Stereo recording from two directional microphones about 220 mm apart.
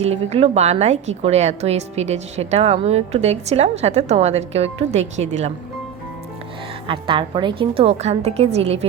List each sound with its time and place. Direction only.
0.0 s a woman's voice: 30° right (ahead or behind)
6.8 s a woman's voice: 20° right (ahead or behind)